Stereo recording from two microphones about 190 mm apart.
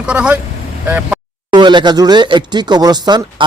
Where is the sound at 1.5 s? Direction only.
25° right (ahead or behind).